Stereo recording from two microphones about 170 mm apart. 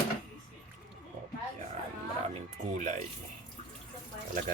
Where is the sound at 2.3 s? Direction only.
45° right (ahead or behind).